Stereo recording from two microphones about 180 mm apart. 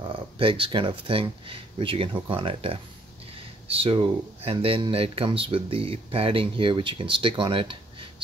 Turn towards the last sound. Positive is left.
turn(degrees=-30)  # may be behind; listen again after turning